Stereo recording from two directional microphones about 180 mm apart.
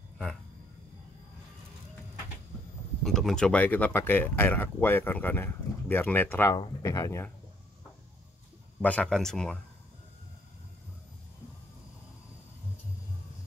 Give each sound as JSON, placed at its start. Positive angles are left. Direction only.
{"t": 3.0, "sound": "speech", "side_deg": 0}
{"t": 8.8, "sound": "speech", "side_deg": 5}